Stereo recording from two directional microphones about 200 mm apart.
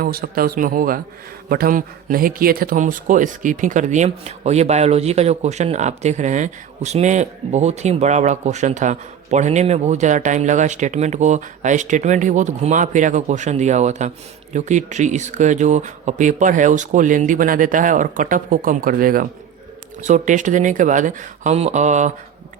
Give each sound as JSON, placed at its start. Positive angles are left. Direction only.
{"t": 0.0, "sound": "a man's voice", "side_deg": -45}